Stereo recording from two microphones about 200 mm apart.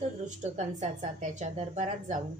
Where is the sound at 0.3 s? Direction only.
35° right (ahead or behind).